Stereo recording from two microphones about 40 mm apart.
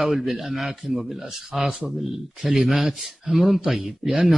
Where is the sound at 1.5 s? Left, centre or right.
Centre.